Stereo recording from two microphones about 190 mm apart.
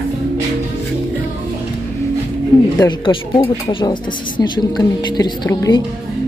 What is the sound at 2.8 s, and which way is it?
Speech, 25° left (ahead or behind).